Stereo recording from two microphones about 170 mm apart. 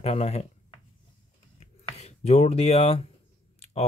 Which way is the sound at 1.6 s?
40° left (ahead or behind).